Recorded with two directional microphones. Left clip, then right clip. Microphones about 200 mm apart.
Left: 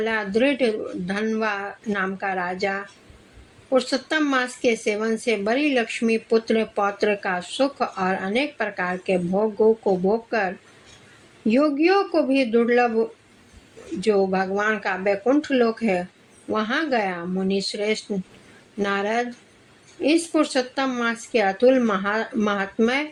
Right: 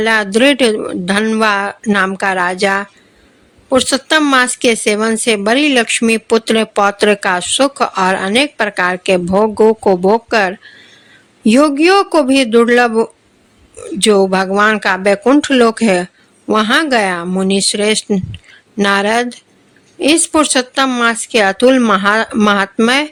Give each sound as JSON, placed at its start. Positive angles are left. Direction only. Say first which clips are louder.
{"t": 0.0, "sound": "speech", "louder": "right 11 dB", "side_deg": -35}